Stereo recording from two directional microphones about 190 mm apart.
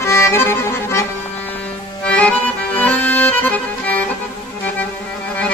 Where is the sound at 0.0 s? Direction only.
15° left (ahead or behind).